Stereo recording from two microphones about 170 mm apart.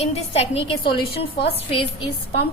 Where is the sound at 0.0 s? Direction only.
35° left (ahead or behind).